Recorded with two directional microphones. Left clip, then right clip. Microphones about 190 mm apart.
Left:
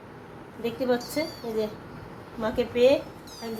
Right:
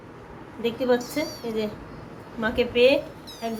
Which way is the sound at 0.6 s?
10° right (ahead or behind).